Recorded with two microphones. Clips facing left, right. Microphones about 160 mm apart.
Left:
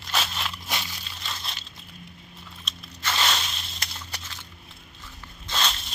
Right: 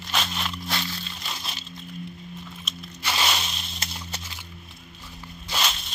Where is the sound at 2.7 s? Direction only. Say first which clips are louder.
Even; 10° right (ahead or behind).